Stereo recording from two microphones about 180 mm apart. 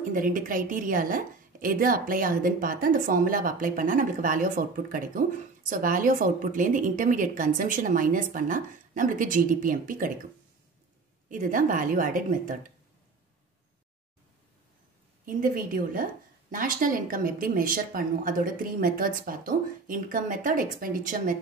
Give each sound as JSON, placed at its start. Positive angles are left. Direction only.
{"t": 0.1, "sound": "a woman's voice", "side_deg": -50}
{"t": 11.2, "sound": "a woman's voice", "side_deg": -45}
{"t": 15.2, "sound": "a woman's voice", "side_deg": -50}